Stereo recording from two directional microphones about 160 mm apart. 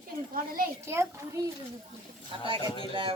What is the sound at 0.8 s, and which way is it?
Speech, 15° right (ahead or behind).